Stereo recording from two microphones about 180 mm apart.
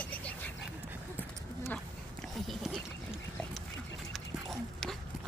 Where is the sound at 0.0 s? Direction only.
10° left (ahead or behind).